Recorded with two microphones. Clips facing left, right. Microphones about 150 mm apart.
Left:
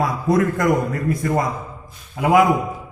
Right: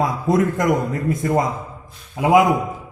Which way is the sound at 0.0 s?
20° right (ahead or behind).